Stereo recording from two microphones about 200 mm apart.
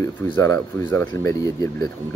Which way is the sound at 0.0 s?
15° left (ahead or behind).